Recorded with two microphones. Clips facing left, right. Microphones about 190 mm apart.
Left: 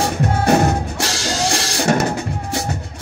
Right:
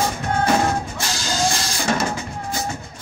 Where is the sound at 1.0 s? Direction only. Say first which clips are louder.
Left 2 dB; 75° left (ahead or behind).